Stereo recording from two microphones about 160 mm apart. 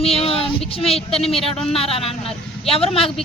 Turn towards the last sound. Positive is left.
turn(degrees=35)  # may be behind; listen again after turning